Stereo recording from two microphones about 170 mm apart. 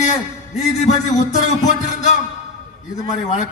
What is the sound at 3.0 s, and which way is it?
Speech, 45° left (ahead or behind).